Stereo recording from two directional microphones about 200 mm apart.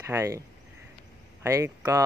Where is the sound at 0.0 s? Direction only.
15° right (ahead or behind).